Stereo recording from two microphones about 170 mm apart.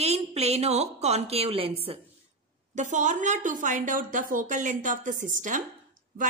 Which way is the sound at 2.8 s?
45° right (ahead or behind).